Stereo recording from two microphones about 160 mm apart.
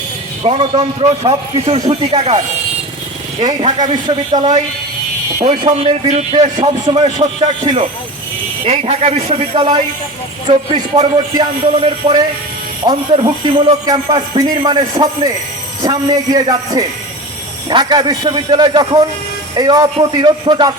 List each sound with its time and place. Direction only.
0.4 s a man's voice: 35° right (ahead or behind)
3.4 s a man's voice: 30° right (ahead or behind)
5.6 s speech: 45° right (ahead or behind)
6.6 s a man's voice: 30° right (ahead or behind)
10.4 s a man's voice: 30° right (ahead or behind)
13.8 s a man's voice: 25° right (ahead or behind)